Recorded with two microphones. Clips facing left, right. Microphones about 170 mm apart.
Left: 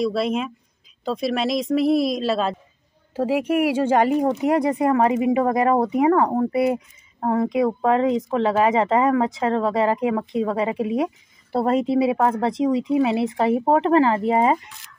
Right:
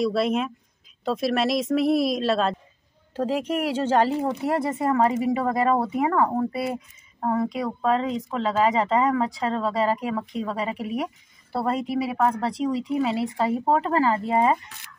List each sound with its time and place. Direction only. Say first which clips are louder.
0.0 s speech: left 1 dB; centre (ahead or behind); by 14.6 s 20° left (ahead or behind)